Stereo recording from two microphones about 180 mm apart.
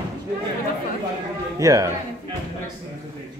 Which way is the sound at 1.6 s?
20° right (ahead or behind).